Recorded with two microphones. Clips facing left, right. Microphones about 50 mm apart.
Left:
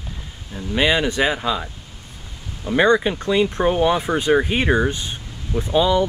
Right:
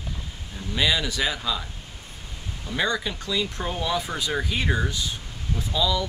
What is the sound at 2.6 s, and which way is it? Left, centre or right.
Speech, left.